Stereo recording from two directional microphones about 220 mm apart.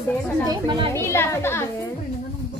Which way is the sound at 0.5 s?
20° right (ahead or behind).